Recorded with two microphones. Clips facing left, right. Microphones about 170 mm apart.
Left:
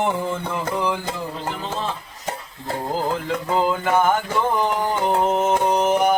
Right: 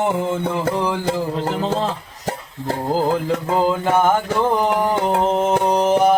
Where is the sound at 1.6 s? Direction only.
90° right.